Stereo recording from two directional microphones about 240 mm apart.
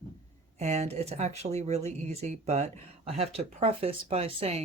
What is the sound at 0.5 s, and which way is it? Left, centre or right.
Speech, right.